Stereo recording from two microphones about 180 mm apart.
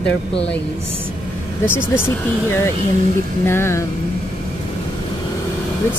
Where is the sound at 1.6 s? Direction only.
10° left (ahead or behind).